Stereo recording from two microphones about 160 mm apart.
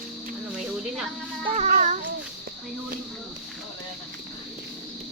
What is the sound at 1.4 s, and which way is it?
Child singing, 45° right (ahead or behind).